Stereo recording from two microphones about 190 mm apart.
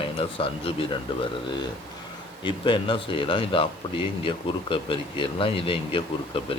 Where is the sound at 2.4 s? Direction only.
25° left (ahead or behind).